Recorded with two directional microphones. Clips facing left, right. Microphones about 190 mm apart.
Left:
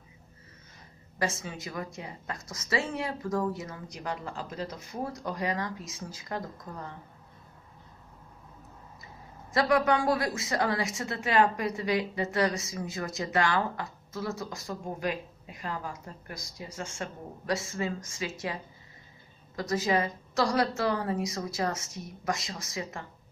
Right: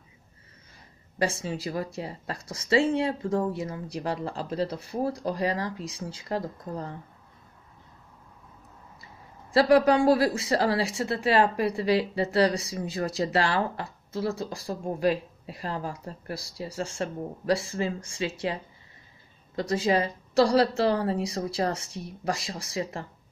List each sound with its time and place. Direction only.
1.2 s speech: 30° right (ahead or behind)
9.5 s speech: 30° right (ahead or behind)